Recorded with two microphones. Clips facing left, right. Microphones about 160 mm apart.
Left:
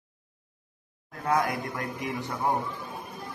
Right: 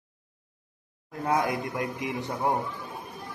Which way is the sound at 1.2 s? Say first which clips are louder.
Even; 20° right (ahead or behind).